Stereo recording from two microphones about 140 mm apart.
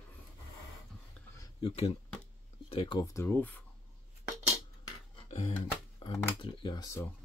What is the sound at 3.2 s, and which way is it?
Speech, 15° left (ahead or behind).